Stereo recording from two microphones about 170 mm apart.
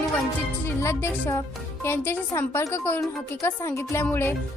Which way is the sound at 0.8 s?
15° left (ahead or behind).